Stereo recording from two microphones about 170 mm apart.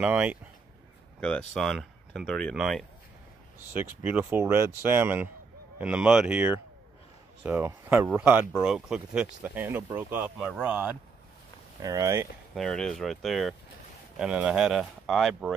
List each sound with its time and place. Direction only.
0.0 s speech: 10° right (ahead or behind)
1.2 s speech: 5° left (ahead or behind)
3.7 s speech: 10° right (ahead or behind)
11.8 s speech: 20° right (ahead or behind)
12.5 s speech: 5° left (ahead or behind)